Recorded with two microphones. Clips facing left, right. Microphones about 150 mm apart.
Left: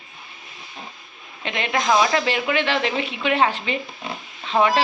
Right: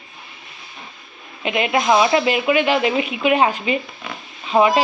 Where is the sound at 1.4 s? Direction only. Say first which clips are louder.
Right 5 dB; 15° right (ahead or behind).